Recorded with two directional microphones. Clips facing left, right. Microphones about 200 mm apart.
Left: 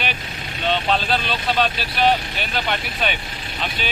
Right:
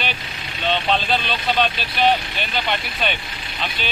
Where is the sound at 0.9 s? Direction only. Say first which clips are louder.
Even; 5° left (ahead or behind).